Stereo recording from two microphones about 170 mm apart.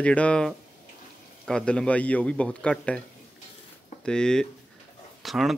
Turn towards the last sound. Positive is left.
turn(degrees=0)  # may be behind; listen again after turning